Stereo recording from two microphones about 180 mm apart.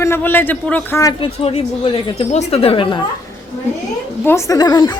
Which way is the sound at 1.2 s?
30° left (ahead or behind).